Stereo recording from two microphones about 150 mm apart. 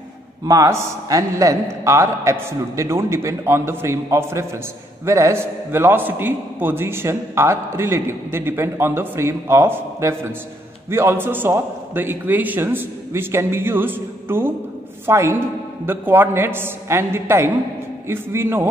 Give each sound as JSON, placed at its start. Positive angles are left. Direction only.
{"t": 0.5, "sound": "a man's voice", "side_deg": -20}